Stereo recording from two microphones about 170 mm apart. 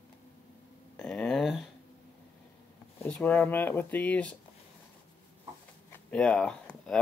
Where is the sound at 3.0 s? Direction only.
10° left (ahead or behind).